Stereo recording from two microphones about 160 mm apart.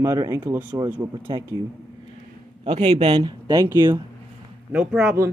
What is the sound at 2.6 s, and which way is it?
Speech, 40° right (ahead or behind).